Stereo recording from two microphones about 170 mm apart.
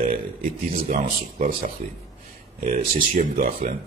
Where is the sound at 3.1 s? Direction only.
50° right (ahead or behind).